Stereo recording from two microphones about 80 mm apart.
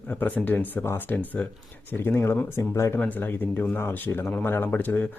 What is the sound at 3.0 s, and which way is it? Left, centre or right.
Speech, left.